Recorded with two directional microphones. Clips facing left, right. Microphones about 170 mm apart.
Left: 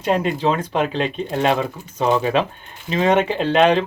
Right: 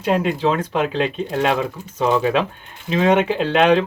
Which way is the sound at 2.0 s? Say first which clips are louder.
Even; 20° left (ahead or behind).